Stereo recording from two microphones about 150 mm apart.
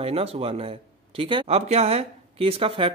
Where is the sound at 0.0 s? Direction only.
40° right (ahead or behind).